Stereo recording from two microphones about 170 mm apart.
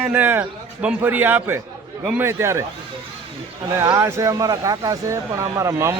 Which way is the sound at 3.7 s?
15° right (ahead or behind).